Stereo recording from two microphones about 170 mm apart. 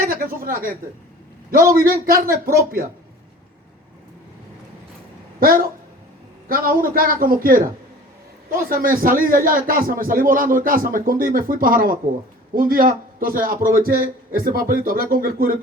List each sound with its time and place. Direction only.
0.0 s a sound: 60° right (ahead or behind)
1.5 s speech: 55° right (ahead or behind)
5.4 s speech: 60° right (ahead or behind)
8.7 s speech: 55° right (ahead or behind)